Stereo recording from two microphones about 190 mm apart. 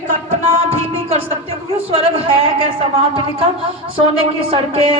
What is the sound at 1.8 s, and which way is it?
Speech, 30° right (ahead or behind).